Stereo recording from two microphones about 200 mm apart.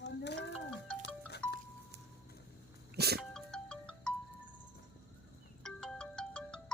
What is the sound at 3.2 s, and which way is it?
Music, 5° left (ahead or behind).